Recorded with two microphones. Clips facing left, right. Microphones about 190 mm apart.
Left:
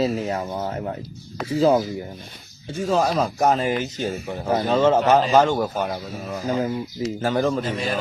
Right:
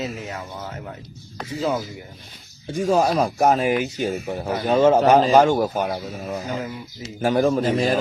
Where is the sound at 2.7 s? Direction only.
15° right (ahead or behind).